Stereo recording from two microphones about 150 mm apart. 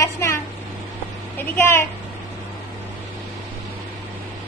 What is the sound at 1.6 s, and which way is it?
Speech, 15° left (ahead or behind).